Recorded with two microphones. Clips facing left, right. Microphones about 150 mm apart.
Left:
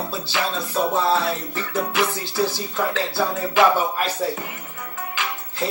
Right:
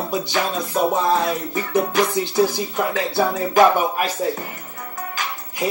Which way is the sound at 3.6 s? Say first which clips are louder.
Right 3 dB; 40° right (ahead or behind).